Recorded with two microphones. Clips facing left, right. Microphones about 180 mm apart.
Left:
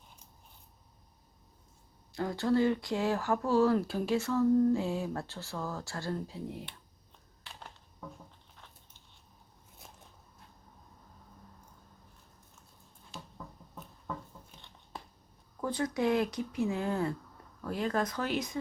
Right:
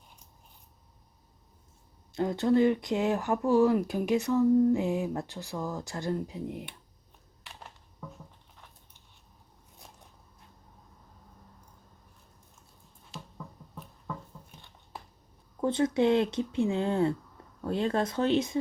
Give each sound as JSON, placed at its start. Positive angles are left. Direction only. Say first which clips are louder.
{"t": 2.1, "sound": "speech", "louder": "right 4 dB", "side_deg": -20}
{"t": 13.1, "sound": "a sound", "louder": "right 2 dB", "side_deg": 0}
{"t": 15.6, "sound": "speech", "louder": "right 6 dB", "side_deg": -25}